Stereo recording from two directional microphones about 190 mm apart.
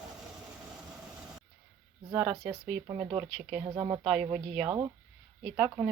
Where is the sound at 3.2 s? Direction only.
Centre (ahead or behind).